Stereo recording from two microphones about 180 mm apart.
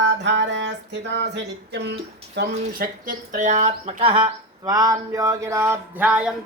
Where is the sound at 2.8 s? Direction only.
45° right (ahead or behind).